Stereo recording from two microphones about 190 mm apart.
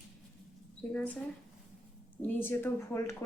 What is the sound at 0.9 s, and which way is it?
Speech, 5° left (ahead or behind).